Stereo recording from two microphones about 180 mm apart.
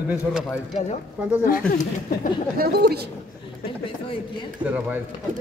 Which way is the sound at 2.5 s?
60° right (ahead or behind).